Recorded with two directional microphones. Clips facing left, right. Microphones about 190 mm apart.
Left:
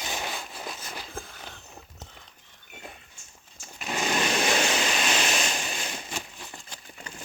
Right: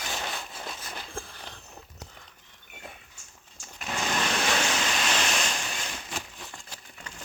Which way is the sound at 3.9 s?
15° left (ahead or behind).